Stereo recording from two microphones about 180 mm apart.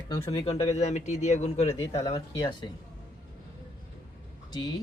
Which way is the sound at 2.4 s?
25° left (ahead or behind).